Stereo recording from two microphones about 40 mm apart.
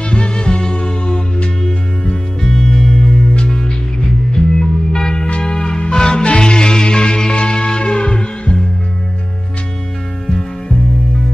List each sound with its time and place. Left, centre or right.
0.1 s music: left
2.4 s music: centre
5.3 s music: left